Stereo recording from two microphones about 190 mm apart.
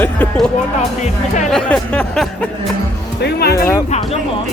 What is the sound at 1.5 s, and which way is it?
Speech, 5° left (ahead or behind).